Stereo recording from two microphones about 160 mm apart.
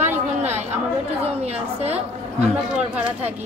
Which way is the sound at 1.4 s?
40° right (ahead or behind).